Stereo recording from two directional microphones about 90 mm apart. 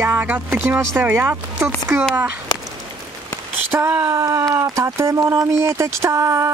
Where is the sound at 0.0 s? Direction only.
20° right (ahead or behind).